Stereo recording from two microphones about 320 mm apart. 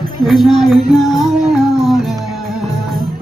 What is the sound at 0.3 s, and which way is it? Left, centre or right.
Music, centre.